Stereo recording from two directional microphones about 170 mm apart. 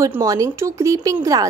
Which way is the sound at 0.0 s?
20° right (ahead or behind).